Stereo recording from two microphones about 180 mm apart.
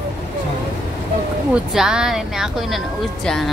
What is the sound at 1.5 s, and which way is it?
Speech, 5° right (ahead or behind).